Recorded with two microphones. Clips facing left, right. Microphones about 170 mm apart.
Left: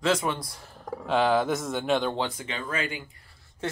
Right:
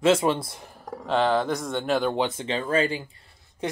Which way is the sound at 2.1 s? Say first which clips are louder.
Right 5 dB; 20° right (ahead or behind).